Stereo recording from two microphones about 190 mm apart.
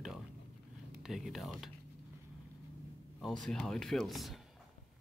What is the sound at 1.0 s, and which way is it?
Speech, centre (ahead or behind).